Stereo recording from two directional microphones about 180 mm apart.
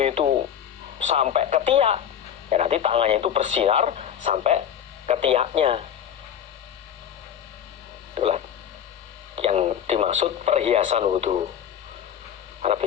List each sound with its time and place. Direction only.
0.0 s radio: 30° right (ahead or behind)
0.9 s speech: 35° right (ahead or behind)
8.1 s speech: 35° right (ahead or behind)
12.6 s speech: 35° right (ahead or behind)